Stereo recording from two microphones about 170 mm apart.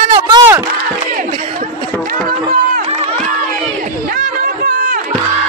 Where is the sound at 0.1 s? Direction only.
20° right (ahead or behind).